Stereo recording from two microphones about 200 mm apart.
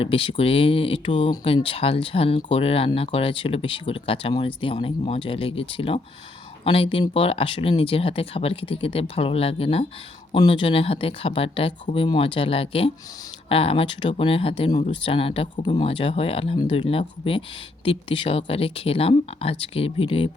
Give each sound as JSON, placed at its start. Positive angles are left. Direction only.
{"t": 0.0, "sound": "speech", "side_deg": 30}